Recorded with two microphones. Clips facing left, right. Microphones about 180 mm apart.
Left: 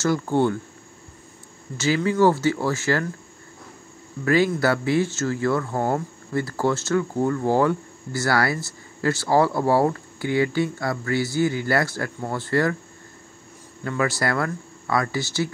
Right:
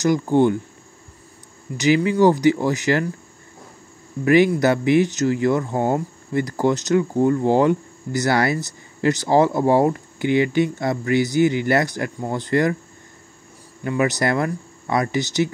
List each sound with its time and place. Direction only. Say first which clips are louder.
0.0 s speech: right 4 dB; 15° right (ahead or behind)
1.8 s speech: right 3 dB; 15° right (ahead or behind)
4.2 s speech: right 4 dB; 20° right (ahead or behind)
13.8 s speech: right 4 dB; 20° right (ahead or behind)